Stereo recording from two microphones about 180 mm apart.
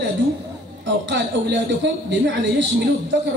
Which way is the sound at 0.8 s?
90° right.